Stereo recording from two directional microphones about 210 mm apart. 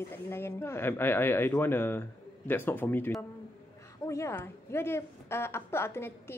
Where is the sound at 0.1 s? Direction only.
10° left (ahead or behind).